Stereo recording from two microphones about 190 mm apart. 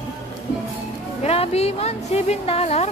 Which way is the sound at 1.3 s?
35° left (ahead or behind).